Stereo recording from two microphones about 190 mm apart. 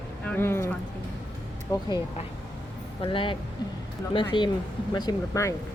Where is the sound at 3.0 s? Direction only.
25° left (ahead or behind).